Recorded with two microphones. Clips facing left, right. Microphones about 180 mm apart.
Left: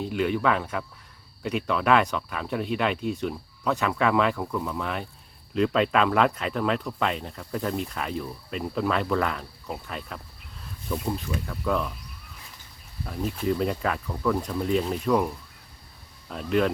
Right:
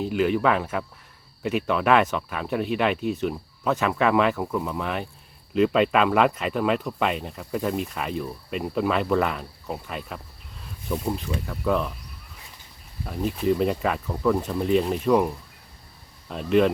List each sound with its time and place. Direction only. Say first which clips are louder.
0.1 s speech: right 2 dB; 5° right (ahead or behind)
13.1 s speech: right 3 dB; 5° right (ahead or behind)
14.7 s speech: right 4 dB; 5° right (ahead or behind)
16.3 s speech: right 4 dB; centre (ahead or behind)